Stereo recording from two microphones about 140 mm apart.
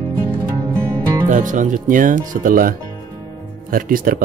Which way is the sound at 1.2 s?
65° right (ahead or behind).